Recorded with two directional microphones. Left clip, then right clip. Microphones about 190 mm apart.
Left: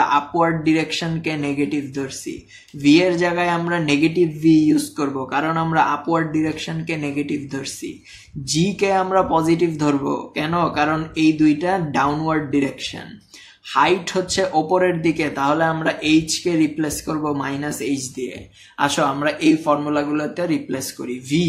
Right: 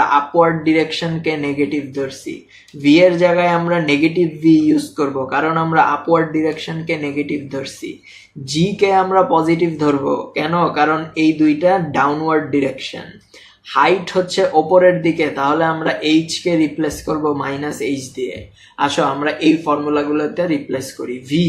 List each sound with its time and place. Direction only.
0.0 s speech: 40° left (ahead or behind)